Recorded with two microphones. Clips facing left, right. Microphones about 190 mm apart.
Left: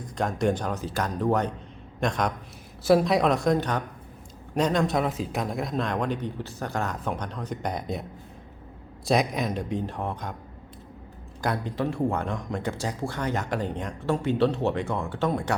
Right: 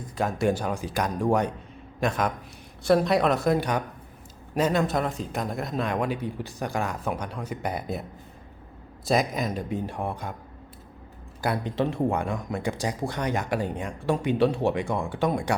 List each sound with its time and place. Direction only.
0.0 s a man's voice: 5° right (ahead or behind)
9.0 s a man's voice: centre (ahead or behind)
11.3 s a man's voice: 10° right (ahead or behind)
11.6 s speech: 20° right (ahead or behind)